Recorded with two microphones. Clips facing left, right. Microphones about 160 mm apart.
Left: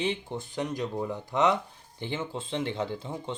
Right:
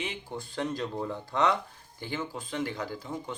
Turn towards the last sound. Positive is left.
turn(degrees=25)  # may be behind; listen again after turning